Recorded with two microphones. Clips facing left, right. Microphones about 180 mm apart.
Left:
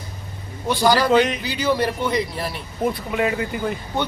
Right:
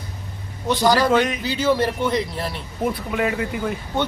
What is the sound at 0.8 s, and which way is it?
Speech, 5° left (ahead or behind).